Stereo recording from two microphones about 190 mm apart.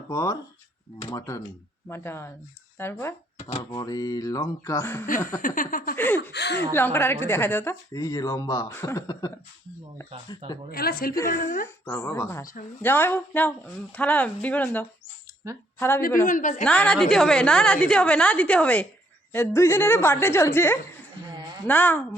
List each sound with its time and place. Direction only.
0.1 s a woman's voice: 15° left (ahead or behind)
5.4 s speech: 45° left (ahead or behind)
6.0 s a woman's voice: 10° left (ahead or behind)
6.3 s speech: 65° left (ahead or behind)
6.7 s a woman's voice: 10° left (ahead or behind)
10.7 s speech: 50° left (ahead or behind)
11.2 s a woman's voice: 15° left (ahead or behind)
16.2 s speech: 40° left (ahead or behind)
16.6 s a woman's voice: 5° left (ahead or behind)